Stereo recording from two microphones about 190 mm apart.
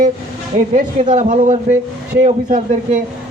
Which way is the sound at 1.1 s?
40° right (ahead or behind).